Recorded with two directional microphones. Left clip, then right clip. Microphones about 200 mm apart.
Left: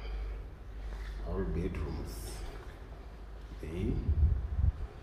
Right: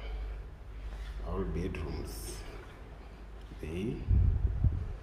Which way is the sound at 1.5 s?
20° right (ahead or behind).